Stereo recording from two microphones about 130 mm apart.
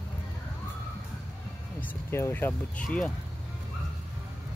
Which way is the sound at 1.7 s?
15° left (ahead or behind).